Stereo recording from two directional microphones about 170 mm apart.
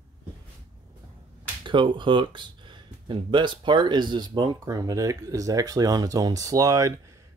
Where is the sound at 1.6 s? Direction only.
30° right (ahead or behind).